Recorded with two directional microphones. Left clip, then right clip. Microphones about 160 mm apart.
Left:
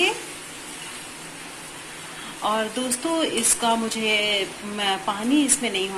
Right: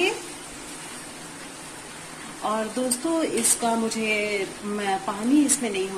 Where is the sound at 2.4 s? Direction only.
Centre (ahead or behind).